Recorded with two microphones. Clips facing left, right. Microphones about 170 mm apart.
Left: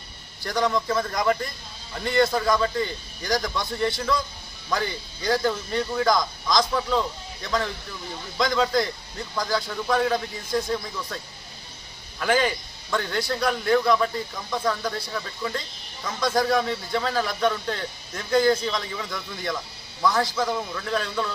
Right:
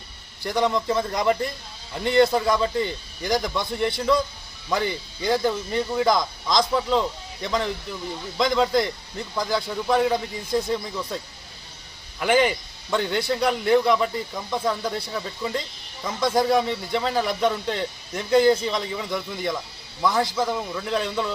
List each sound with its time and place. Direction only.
0.4 s speech: 20° right (ahead or behind)
12.2 s speech: 15° right (ahead or behind)